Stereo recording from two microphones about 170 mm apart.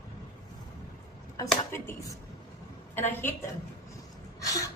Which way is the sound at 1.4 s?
15° left (ahead or behind).